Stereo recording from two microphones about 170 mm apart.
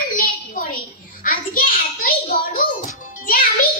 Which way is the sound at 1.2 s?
55° left (ahead or behind).